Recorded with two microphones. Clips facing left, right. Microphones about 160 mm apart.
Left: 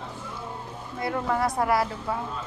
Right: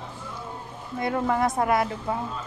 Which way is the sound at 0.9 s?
20° right (ahead or behind).